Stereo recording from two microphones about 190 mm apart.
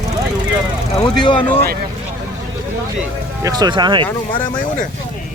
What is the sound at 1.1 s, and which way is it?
Speech, 25° left (ahead or behind).